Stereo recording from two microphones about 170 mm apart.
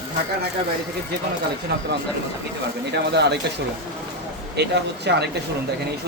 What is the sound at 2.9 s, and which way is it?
Speech, 80° right.